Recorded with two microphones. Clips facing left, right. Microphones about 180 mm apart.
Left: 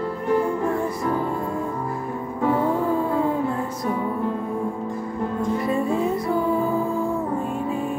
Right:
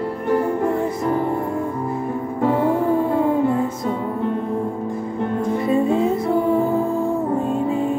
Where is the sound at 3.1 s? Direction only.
25° right (ahead or behind).